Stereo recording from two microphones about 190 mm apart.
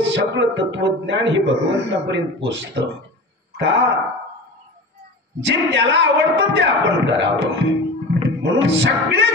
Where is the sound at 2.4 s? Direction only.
75° right (ahead or behind).